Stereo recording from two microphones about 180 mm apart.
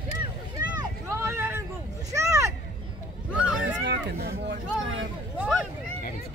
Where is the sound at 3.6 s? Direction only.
70° right (ahead or behind).